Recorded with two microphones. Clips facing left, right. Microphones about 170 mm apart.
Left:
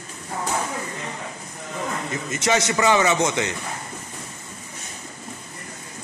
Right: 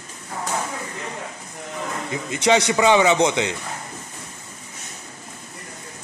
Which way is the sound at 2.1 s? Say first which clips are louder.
Right 5 dB; 15° right (ahead or behind).